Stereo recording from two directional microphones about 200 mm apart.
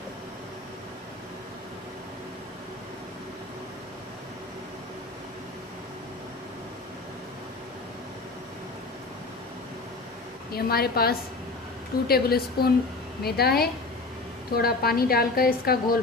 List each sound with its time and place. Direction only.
10.5 s a woman's voice: 50° left (ahead or behind)